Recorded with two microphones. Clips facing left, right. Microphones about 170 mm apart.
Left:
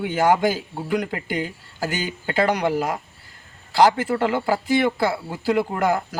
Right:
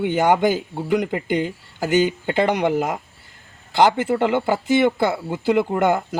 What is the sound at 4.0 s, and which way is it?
Speech, 20° right (ahead or behind).